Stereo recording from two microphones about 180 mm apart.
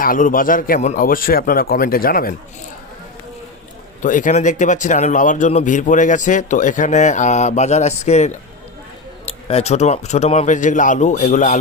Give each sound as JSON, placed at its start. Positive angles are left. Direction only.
{"t": 0.0, "sound": "speech", "side_deg": 50}
{"t": 4.0, "sound": "speech", "side_deg": 45}